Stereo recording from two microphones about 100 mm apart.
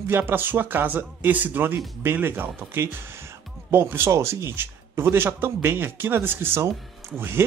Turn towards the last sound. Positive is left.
turn(degrees=-25)  # may be behind; listen again after turning